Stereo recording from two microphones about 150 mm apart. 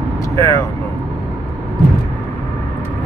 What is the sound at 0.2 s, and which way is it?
Vehicle, 20° left (ahead or behind).